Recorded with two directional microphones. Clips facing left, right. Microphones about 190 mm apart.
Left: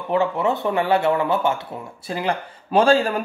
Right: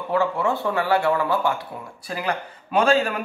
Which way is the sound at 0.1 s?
20° left (ahead or behind).